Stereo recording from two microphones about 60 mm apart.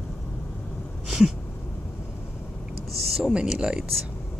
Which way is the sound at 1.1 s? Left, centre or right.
Centre.